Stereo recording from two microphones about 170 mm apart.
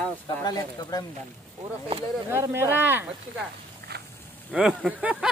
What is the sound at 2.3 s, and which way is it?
Speech, 15° right (ahead or behind).